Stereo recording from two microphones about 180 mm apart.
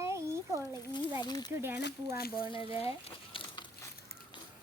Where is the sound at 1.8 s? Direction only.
65° left (ahead or behind).